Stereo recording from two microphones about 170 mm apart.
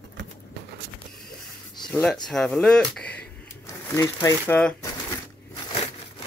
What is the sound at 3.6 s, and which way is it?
Speech, 20° left (ahead or behind).